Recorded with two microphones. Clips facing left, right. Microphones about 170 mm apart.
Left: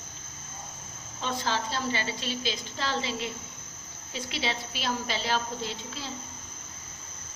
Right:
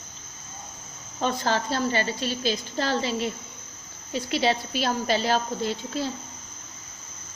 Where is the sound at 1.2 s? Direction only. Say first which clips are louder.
Right 5 dB; 50° right (ahead or behind).